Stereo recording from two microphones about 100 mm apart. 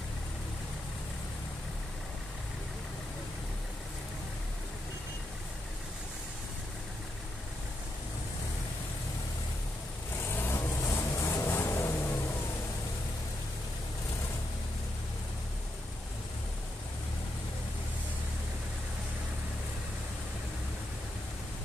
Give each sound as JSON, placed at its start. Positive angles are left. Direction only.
{"t": 10.1, "sound": "vehicle", "side_deg": 20}